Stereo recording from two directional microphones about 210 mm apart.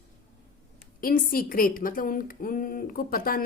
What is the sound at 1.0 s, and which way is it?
Speech, 45° left (ahead or behind).